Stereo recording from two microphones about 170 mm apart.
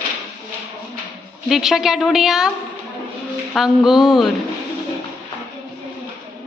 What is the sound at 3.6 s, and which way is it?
Speech, centre (ahead or behind).